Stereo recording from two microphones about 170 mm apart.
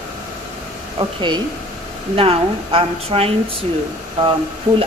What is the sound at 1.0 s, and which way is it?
A woman's voice, 30° right (ahead or behind).